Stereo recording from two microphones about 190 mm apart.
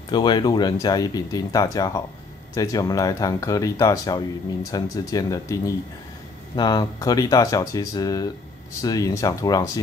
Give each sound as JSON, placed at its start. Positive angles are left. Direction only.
{"t": 0.1, "sound": "speech", "side_deg": 25}